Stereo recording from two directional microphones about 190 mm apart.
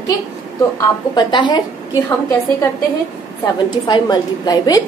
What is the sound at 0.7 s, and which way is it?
Speech, 25° left (ahead or behind).